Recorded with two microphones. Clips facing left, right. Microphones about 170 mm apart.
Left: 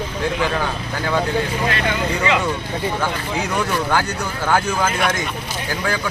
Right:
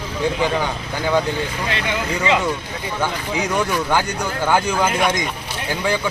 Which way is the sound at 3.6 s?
10° right (ahead or behind).